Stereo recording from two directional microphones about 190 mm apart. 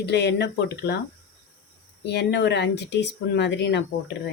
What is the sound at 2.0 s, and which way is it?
Speech, 60° left (ahead or behind).